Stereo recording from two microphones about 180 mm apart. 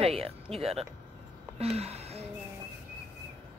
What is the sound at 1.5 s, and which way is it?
Gasp, 35° right (ahead or behind).